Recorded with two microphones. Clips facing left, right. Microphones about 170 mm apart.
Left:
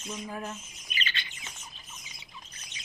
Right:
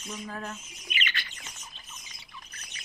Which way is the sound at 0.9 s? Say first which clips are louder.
Right 2 dB; 35° left (ahead or behind).